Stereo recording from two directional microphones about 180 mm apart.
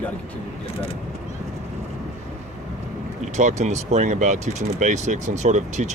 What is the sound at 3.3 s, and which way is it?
Speech, 40° right (ahead or behind).